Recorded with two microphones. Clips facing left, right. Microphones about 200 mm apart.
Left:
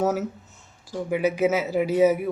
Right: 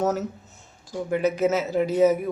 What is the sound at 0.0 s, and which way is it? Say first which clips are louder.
Speech: left 1 dB; 10° left (ahead or behind).